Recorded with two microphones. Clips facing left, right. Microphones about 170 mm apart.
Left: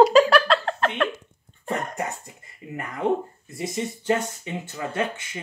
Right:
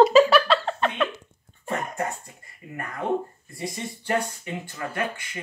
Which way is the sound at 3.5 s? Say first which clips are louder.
Left 4 dB; 20° left (ahead or behind).